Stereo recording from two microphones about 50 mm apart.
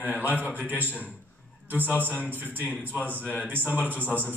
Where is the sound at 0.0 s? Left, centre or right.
Right.